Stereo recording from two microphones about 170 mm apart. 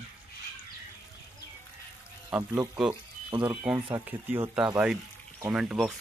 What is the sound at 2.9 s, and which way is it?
Water, 25° right (ahead or behind).